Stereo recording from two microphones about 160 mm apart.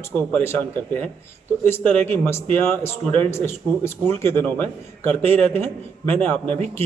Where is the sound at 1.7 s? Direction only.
15° left (ahead or behind).